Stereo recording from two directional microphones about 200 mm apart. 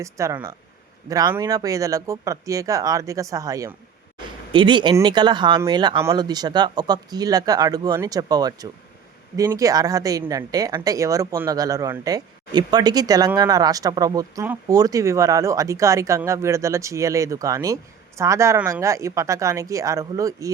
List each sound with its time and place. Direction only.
0.0 s speech: 15° right (ahead or behind)